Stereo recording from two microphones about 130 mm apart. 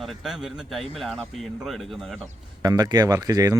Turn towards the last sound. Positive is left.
turn(degrees=-25)  # may be behind; listen again after turning